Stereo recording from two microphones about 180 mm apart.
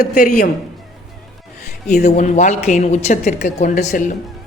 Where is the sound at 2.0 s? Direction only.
40° left (ahead or behind).